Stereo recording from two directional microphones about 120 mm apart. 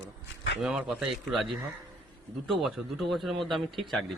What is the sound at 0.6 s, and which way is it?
Speech, 5° right (ahead or behind).